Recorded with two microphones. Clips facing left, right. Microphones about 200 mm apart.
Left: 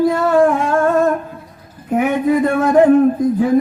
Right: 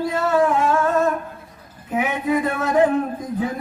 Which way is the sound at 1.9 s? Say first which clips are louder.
Left 6 dB; 50° left (ahead or behind).